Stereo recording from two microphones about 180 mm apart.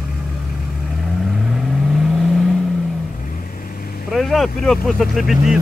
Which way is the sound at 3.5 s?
55° left (ahead or behind).